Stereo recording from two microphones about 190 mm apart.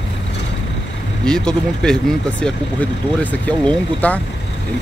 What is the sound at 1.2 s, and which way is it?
Speech, 5° left (ahead or behind).